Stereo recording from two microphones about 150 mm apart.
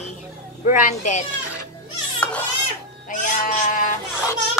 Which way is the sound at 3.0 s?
60° left (ahead or behind).